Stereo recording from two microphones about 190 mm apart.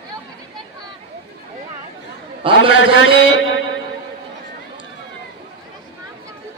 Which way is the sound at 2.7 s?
80° left.